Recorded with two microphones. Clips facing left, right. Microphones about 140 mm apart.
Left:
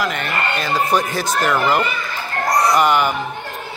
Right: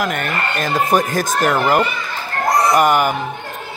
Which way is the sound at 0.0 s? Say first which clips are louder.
Right 1 dB; 50° right (ahead or behind).